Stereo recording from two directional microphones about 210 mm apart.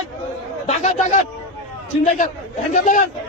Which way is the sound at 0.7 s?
30° left (ahead or behind).